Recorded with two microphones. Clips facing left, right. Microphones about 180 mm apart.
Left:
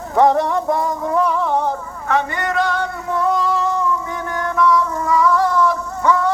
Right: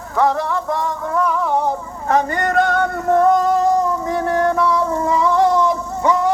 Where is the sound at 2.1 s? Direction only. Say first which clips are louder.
Right 3 dB; 40° right (ahead or behind).